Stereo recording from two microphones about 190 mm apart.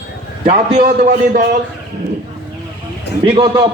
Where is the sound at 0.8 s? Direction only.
50° right (ahead or behind).